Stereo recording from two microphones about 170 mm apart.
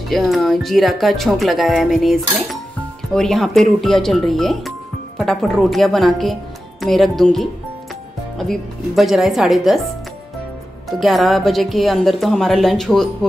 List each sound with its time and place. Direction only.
0.1 s speech: centre (ahead or behind)